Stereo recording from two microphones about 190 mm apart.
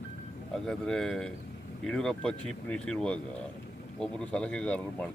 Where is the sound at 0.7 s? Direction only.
5° left (ahead or behind).